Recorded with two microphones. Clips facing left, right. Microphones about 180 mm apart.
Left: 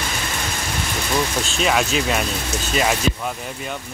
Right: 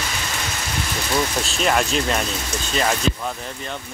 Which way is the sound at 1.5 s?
5° left (ahead or behind).